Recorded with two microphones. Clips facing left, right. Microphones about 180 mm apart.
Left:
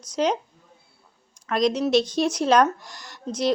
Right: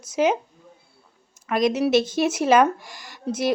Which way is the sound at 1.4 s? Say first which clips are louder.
Right 1 dB; 5° right (ahead or behind).